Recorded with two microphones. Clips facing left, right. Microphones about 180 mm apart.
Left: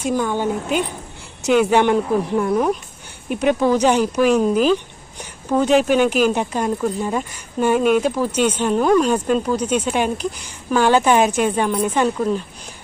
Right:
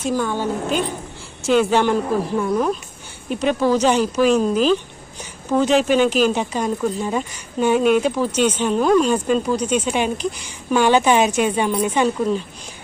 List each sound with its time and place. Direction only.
0.0 s speech: 15° left (ahead or behind)
6.6 s speech: centre (ahead or behind)